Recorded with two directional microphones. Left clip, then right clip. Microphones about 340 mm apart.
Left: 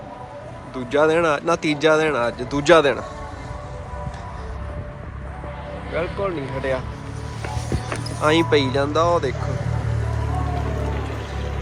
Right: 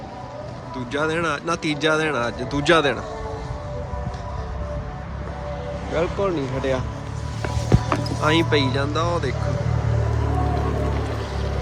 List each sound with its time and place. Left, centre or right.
0.9 s a man's voice: centre
5.9 s speech: centre
7.9 s speech: centre
10.4 s music: right